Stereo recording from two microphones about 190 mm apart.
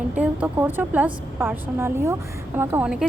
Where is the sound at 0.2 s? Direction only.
10° right (ahead or behind).